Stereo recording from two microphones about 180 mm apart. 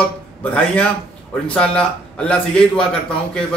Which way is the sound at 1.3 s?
5° left (ahead or behind).